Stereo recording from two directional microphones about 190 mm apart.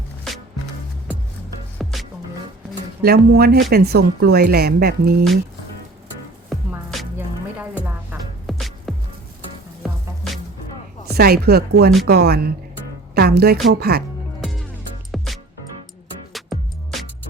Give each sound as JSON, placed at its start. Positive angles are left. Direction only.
{"t": 1.8, "sound": "music", "side_deg": 0}
{"t": 3.0, "sound": "a woman's voice", "side_deg": -55}
{"t": 6.5, "sound": "music", "side_deg": 0}
{"t": 8.1, "sound": "music", "side_deg": 0}
{"t": 11.2, "sound": "a woman's voice", "side_deg": -55}
{"t": 15.1, "sound": "music", "side_deg": 0}